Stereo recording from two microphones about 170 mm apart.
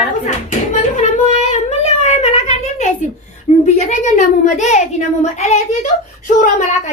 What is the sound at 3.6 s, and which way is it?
A child's voice, 40° left (ahead or behind).